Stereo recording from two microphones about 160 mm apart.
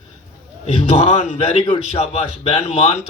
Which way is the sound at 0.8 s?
45° left (ahead or behind).